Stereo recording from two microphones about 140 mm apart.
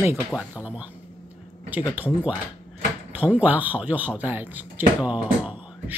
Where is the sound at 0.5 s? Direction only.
10° right (ahead or behind).